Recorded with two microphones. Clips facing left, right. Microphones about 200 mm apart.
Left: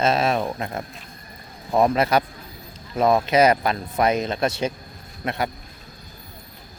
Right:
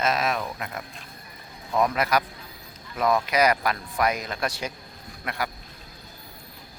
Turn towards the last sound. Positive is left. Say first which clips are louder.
# left 5 dB
turn(degrees=25)  # may be behind; listen again after turning